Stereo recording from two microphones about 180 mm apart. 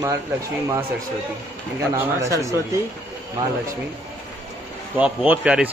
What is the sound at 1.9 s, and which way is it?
Speech, 15° right (ahead or behind).